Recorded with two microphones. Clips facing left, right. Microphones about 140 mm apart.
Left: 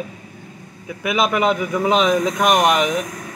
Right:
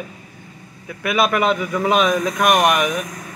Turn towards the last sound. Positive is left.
turn(degrees=20)  # may be behind; listen again after turning